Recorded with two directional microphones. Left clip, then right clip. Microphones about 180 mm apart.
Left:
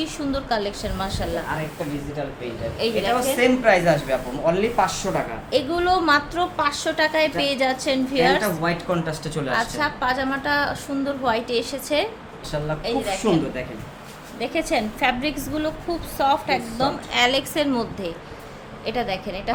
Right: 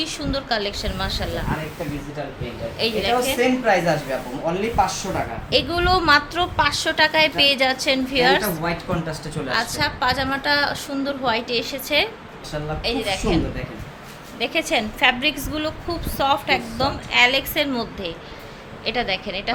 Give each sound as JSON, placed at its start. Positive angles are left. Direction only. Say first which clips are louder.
{"t": 0.0, "sound": "a woman's voice", "louder": "right 1 dB", "side_deg": 5}
{"t": 2.7, "sound": "a woman's voice", "louder": "right 1 dB", "side_deg": 0}
{"t": 3.3, "sound": "a woman's voice", "louder": "left 1 dB", "side_deg": 15}
{"t": 8.6, "sound": "speech", "louder": "left 1 dB", "side_deg": 20}
{"t": 9.5, "sound": "a woman's voice", "louder": "right 1 dB", "side_deg": -5}
{"t": 13.1, "sound": "a woman's voice", "louder": "left 3 dB", "side_deg": 0}
{"t": 18.9, "sound": "a woman's voice", "louder": "right 2 dB", "side_deg": 5}